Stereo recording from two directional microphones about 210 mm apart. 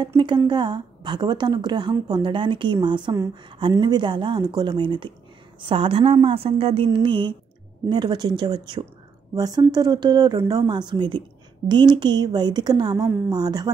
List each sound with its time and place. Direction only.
0.0 s a woman's voice: 20° right (ahead or behind)